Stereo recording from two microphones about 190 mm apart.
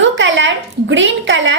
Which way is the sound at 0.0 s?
80° right.